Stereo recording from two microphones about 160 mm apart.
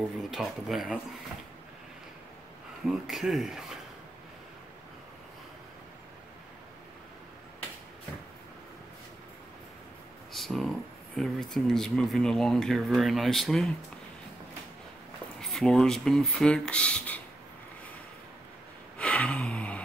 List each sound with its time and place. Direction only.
0.3 s speech: centre (ahead or behind)
2.9 s speech: centre (ahead or behind)
10.3 s a sound: centre (ahead or behind)
11.1 s speech: centre (ahead or behind)
15.4 s speech: 5° left (ahead or behind)
18.9 s gasp: 5° left (ahead or behind)